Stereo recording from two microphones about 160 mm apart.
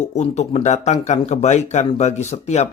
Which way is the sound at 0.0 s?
45° left (ahead or behind).